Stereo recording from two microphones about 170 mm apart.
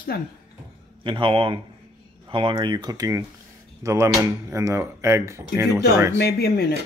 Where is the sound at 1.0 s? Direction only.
30° right (ahead or behind).